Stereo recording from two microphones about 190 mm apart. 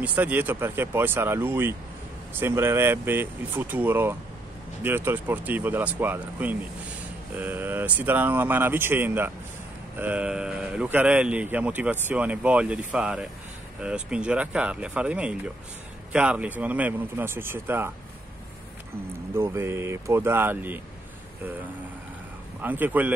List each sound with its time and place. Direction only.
0.0 s speech: 10° right (ahead or behind)
19.3 s speech: 15° right (ahead or behind)
22.6 s speech: 10° right (ahead or behind)